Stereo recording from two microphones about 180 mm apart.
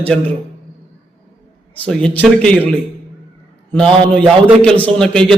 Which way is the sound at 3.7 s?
5° left (ahead or behind).